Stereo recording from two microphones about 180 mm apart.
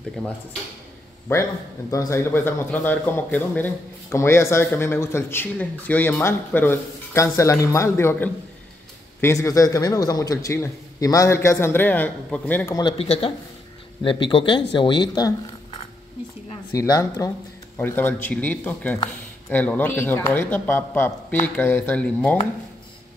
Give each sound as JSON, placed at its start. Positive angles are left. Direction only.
{"t": 1.3, "sound": "a man's voice", "side_deg": 15}
{"t": 12.8, "sound": "speech", "side_deg": 30}
{"t": 16.7, "sound": "a man's voice", "side_deg": 20}